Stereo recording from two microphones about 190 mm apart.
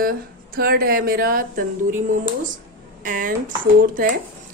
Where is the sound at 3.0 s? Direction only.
45° right (ahead or behind).